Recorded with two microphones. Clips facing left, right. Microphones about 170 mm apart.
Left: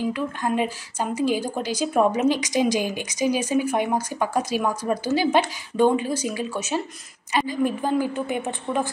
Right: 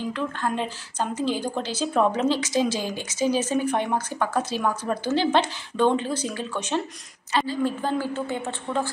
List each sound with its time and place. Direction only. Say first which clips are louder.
0.0 s a woman's voice: left 2 dB; 10° left (ahead or behind)